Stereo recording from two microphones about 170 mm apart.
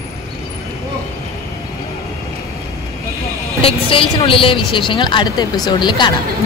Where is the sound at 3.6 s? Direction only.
30° left (ahead or behind).